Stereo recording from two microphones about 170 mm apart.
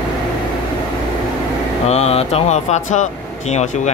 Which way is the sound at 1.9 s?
40° left (ahead or behind).